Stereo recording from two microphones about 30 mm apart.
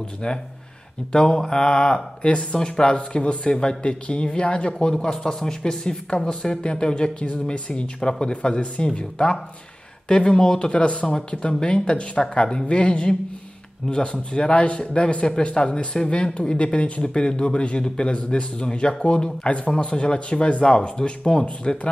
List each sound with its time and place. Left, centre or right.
1.1 s speech: left
1.7 s a man's voice: left
2.5 s a man's voice: left
8.0 s a man's voice: left
10.7 s a man's voice: left
16.5 s speech: left
17.0 s a man's voice: left